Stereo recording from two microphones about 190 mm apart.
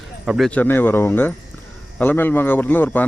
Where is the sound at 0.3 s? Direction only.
Centre (ahead or behind).